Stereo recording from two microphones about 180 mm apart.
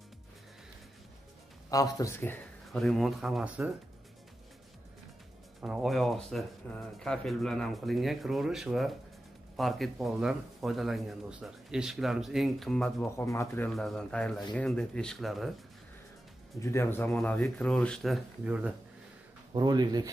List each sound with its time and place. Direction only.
1.7 s speech: 20° left (ahead or behind); by 3.7 s 5° right (ahead or behind)
5.6 s speech: 5° right (ahead or behind)
13.0 s speech: 15° left (ahead or behind)
13.7 s speech: centre (ahead or behind)
16.6 s speech: 15° left (ahead or behind); by 18.8 s 5° right (ahead or behind)
19.5 s speech: 20° right (ahead or behind)